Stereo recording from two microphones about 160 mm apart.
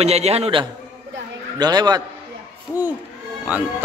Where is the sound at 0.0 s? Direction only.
40° right (ahead or behind).